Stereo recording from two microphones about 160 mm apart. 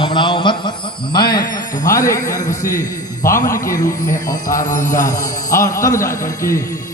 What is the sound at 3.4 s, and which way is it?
Speech, 20° left (ahead or behind).